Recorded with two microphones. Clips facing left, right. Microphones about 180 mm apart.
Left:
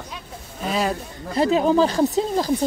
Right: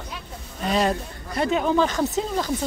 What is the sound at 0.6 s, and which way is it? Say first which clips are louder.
Speech: right 1 dB; 5° left (ahead or behind).